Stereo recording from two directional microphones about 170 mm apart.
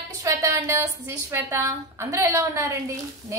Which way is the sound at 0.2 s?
15° right (ahead or behind).